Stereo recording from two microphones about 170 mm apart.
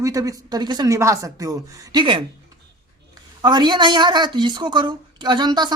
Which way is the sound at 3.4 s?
25° right (ahead or behind).